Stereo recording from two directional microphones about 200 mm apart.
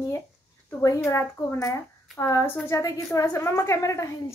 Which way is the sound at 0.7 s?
15° left (ahead or behind).